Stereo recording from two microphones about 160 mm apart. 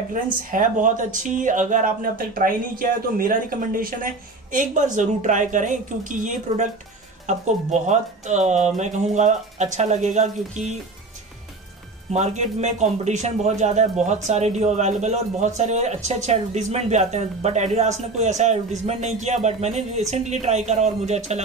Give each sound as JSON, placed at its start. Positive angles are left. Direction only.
{"t": 0.1, "sound": "speech", "side_deg": -55}
{"t": 12.1, "sound": "speech", "side_deg": -45}